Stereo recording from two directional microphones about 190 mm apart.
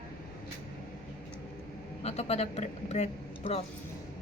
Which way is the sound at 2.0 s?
35° left (ahead or behind).